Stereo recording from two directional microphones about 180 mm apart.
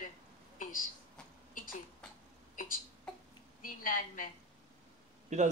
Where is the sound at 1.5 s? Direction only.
50° left (ahead or behind).